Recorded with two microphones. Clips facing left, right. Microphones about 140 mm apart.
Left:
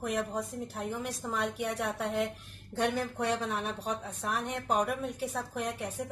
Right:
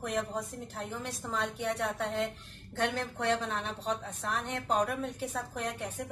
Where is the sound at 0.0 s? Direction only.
5° left (ahead or behind).